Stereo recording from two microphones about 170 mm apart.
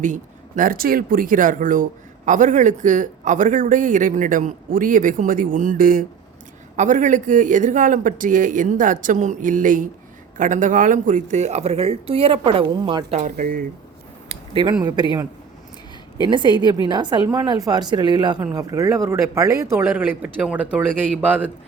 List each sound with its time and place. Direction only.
0.0 s speech: 50° right (ahead or behind); by 13.1 s 30° right (ahead or behind)
13.1 s speech: 55° right (ahead or behind)
14.3 s speech: 30° right (ahead or behind)
16.3 s a woman's voice: 25° right (ahead or behind); by 21.5 s 10° right (ahead or behind)